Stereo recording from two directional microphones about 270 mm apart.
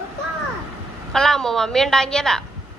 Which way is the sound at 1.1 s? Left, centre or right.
Centre.